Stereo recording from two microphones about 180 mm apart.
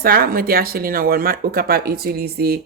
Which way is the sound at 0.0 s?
55° right (ahead or behind).